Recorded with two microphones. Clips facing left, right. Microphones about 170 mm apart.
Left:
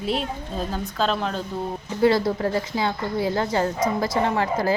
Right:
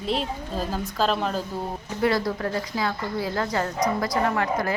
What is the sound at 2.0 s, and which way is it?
A woman's voice, 25° left (ahead or behind).